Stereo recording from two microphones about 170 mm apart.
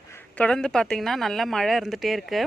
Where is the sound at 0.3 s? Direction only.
5° left (ahead or behind).